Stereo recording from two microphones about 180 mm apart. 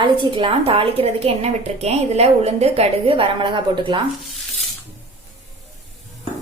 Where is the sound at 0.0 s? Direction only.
25° right (ahead or behind).